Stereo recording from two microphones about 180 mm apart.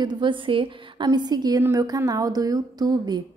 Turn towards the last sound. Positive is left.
turn(degrees=-20)  # may be behind; listen again after turning